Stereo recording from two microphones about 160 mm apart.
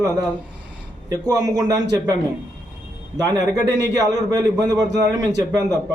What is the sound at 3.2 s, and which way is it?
A man's voice, 25° right (ahead or behind).